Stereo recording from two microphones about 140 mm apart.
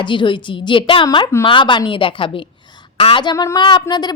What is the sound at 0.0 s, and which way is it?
A woman's voice, 35° left (ahead or behind).